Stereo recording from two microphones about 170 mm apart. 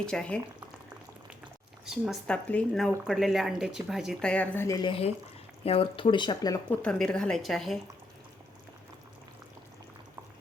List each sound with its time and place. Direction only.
0.0 s speech: 5° left (ahead or behind)
1.8 s speech: centre (ahead or behind); by 4.9 s 20° left (ahead or behind)
4.9 s speech: 35° left (ahead or behind)
6.7 s speech: 5° left (ahead or behind)